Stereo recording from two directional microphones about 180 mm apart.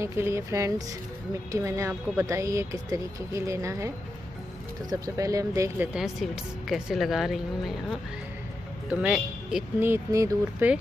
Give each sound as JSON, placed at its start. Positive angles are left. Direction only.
{"t": 0.0, "sound": "speech", "side_deg": -15}
{"t": 6.7, "sound": "speech", "side_deg": 0}